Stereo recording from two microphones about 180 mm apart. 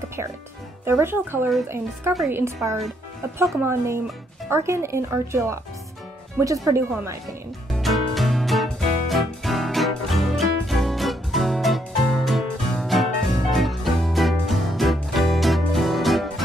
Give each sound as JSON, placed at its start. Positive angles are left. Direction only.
{"t": 0.8, "sound": "speech", "side_deg": -15}
{"t": 7.7, "sound": "music", "side_deg": 0}